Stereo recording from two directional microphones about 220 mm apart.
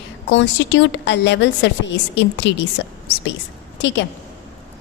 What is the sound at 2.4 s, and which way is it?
Speech, 55° left (ahead or behind).